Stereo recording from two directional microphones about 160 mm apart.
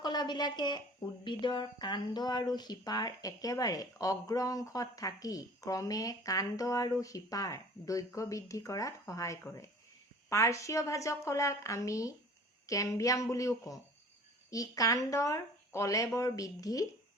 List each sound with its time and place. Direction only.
0.0 s a woman's voice: 25° left (ahead or behind)